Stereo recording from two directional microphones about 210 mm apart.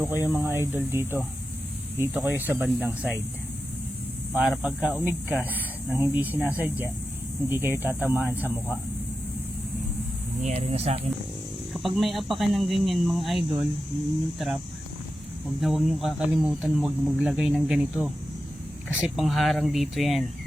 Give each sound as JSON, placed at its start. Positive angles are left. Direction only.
{"t": 0.0, "sound": "speech", "side_deg": -10}
{"t": 4.4, "sound": "speech", "side_deg": -5}
{"t": 10.4, "sound": "speech", "side_deg": -30}
{"t": 11.7, "sound": "speech", "side_deg": 0}